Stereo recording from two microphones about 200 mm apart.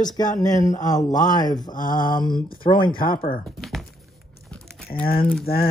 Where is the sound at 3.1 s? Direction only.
25° left (ahead or behind).